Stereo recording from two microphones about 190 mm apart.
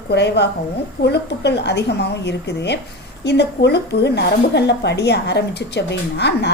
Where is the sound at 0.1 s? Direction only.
60° left (ahead or behind).